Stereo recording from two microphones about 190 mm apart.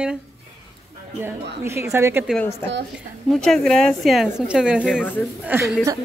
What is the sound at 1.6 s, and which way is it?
Speech, 15° right (ahead or behind).